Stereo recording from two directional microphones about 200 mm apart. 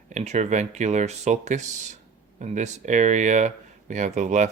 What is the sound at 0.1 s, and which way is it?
Speech, 35° right (ahead or behind).